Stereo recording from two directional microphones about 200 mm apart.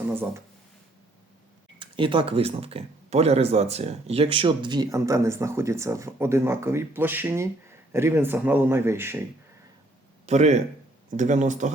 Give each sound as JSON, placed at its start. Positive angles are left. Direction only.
{"t": 0.1, "sound": "a man's voice", "side_deg": -10}
{"t": 1.8, "sound": "a man's voice", "side_deg": -25}
{"t": 10.2, "sound": "speech", "side_deg": -35}